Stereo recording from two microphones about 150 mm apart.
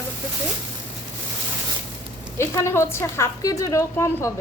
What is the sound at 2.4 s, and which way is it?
A woman's voice, 20° left (ahead or behind).